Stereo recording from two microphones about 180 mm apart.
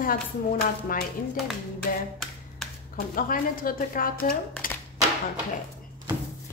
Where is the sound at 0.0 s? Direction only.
50° left (ahead or behind).